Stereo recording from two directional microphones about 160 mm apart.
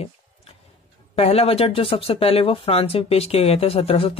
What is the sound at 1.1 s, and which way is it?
Speech, 40° left (ahead or behind).